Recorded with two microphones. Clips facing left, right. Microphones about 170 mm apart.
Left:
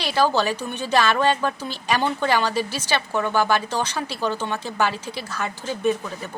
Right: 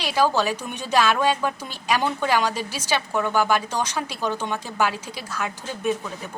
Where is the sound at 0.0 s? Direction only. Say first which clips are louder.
Left 1 dB; 10° right (ahead or behind).